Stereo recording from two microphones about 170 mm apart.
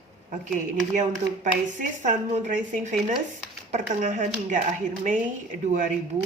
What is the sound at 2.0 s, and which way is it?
Speech, 45° right (ahead or behind).